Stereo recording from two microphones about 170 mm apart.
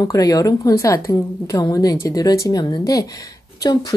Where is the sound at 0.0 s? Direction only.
20° left (ahead or behind).